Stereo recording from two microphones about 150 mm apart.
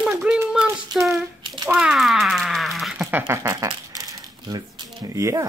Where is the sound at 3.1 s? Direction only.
20° right (ahead or behind).